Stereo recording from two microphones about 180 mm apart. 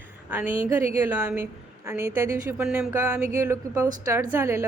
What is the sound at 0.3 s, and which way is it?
A woman's voice, 10° right (ahead or behind).